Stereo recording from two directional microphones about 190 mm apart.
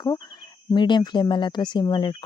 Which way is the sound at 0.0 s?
20° left (ahead or behind).